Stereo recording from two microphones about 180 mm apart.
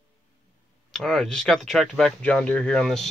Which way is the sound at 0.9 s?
Centre (ahead or behind).